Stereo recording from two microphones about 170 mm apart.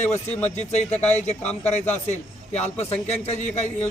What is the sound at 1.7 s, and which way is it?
A man's voice, 40° left (ahead or behind).